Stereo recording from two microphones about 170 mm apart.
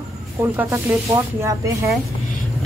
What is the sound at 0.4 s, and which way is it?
Speech, 15° right (ahead or behind).